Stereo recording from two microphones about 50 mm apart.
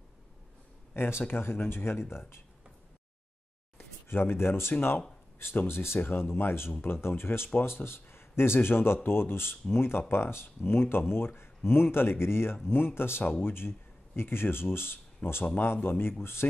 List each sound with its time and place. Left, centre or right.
1.2 s speech: left
3.7 s speech: left
15.2 s speech: left
15.6 s speech: left